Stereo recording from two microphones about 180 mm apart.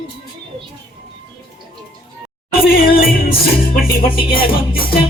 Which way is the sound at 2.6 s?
55° left (ahead or behind).